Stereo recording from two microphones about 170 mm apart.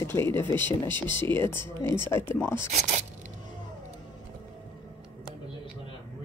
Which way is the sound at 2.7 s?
45° right (ahead or behind).